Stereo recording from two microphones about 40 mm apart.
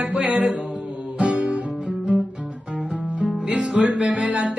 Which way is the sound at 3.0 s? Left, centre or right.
Right.